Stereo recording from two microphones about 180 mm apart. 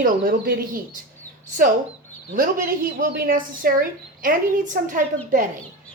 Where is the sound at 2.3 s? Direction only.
50° right (ahead or behind).